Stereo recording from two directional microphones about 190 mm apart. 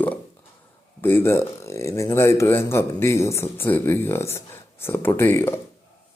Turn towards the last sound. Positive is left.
turn(degrees=15)  # may be behind; listen again after turning